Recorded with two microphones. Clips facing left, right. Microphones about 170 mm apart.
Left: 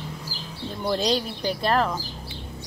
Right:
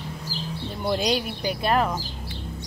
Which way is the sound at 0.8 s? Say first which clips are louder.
Even; 10° right (ahead or behind).